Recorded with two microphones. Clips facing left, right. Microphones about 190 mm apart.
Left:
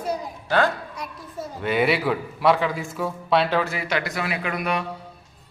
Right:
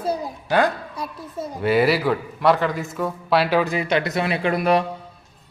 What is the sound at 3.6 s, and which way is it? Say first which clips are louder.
Speech: right 5 dB; 20° right (ahead or behind).